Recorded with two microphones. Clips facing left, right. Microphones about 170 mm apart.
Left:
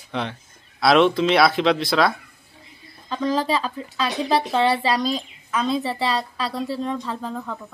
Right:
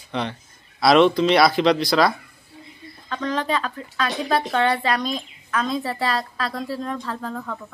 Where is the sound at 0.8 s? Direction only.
Centre (ahead or behind).